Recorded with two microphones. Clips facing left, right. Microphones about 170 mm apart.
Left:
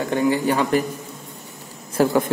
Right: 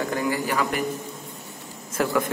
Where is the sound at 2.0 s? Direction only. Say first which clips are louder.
Left 6 dB; 30° left (ahead or behind).